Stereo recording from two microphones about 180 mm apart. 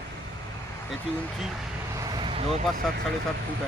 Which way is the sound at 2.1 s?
25° right (ahead or behind).